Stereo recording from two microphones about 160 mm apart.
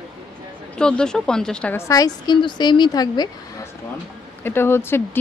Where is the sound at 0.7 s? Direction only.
5° left (ahead or behind).